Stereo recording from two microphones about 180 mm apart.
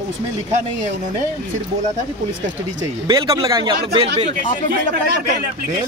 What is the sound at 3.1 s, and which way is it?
Speech, 20° right (ahead or behind).